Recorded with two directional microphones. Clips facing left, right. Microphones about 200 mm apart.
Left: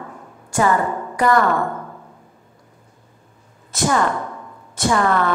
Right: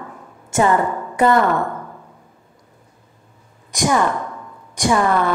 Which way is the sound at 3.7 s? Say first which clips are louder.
Right 1 dB; 15° right (ahead or behind).